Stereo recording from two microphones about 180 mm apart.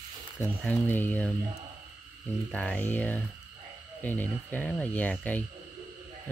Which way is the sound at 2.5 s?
5° left (ahead or behind).